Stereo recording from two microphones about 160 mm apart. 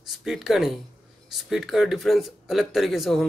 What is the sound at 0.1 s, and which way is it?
A man's voice, centre (ahead or behind).